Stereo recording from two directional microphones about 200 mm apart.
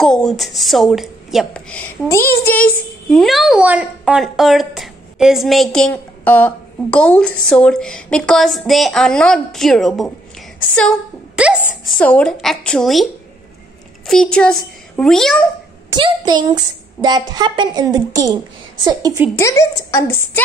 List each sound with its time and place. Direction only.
0.0 s a woman's voice: centre (ahead or behind)
11.4 s a sound: 5° right (ahead or behind)
11.8 s a woman's voice: 5° left (ahead or behind)
15.9 s a woman's voice: 20° right (ahead or behind)
19.3 s a woman's voice: 15° left (ahead or behind)